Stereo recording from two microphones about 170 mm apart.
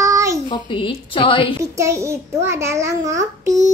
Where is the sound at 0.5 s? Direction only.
30° left (ahead or behind).